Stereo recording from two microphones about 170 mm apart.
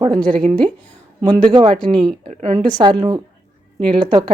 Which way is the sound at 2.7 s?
25° right (ahead or behind).